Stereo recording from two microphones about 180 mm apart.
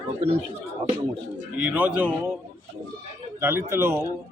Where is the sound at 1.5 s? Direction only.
10° right (ahead or behind).